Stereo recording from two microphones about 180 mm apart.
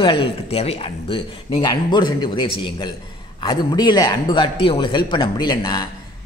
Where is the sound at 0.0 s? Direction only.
30° left (ahead or behind).